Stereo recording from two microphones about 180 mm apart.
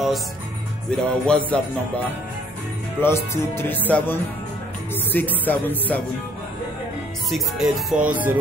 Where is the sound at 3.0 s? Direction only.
15° left (ahead or behind).